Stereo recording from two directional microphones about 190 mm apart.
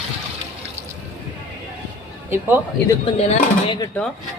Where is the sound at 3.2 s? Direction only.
35° left (ahead or behind).